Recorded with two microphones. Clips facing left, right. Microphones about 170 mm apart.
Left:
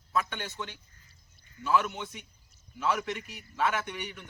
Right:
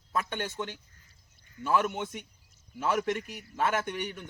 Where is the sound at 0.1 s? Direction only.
50° right (ahead or behind).